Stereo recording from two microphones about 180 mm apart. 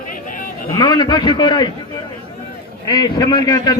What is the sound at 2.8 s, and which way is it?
Speech, 20° left (ahead or behind).